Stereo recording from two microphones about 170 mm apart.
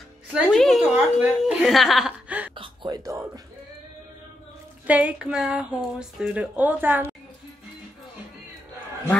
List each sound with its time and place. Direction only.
0.3 s a woman's voice: centre (ahead or behind)
2.5 s gasp: 30° right (ahead or behind)
4.8 s a woman's voice: 10° right (ahead or behind)